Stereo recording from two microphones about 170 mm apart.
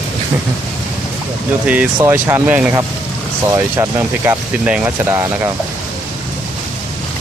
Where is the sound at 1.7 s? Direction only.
10° right (ahead or behind).